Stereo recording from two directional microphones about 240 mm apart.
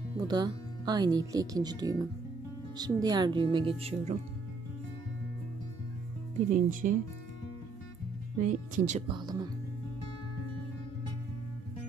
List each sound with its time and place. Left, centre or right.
0.2 s speech: centre
6.5 s speech: right
8.4 s speech: right; by 9.5 s centre